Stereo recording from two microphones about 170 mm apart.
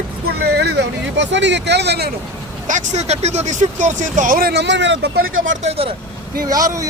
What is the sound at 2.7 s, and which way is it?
Speech, 45° right (ahead or behind).